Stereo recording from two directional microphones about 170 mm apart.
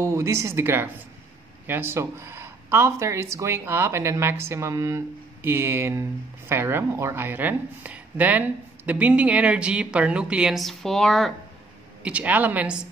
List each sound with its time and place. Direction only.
0.0 s speech: 15° right (ahead or behind)